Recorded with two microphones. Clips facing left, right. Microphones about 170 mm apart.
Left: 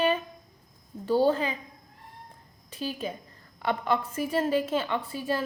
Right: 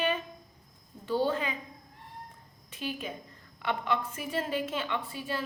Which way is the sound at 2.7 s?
35° left (ahead or behind).